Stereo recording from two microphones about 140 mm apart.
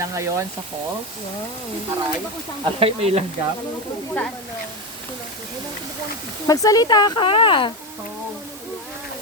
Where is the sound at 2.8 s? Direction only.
45° right (ahead or behind).